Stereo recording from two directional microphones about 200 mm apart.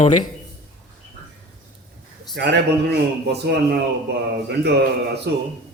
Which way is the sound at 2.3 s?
55° right (ahead or behind).